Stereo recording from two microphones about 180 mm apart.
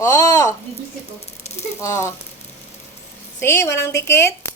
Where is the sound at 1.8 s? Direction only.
15° left (ahead or behind).